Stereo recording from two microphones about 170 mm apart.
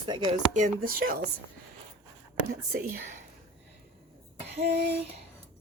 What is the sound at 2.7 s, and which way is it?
Speech, 55° right (ahead or behind).